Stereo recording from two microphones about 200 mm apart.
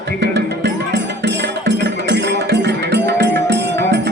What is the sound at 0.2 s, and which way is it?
Music, 60° right (ahead or behind).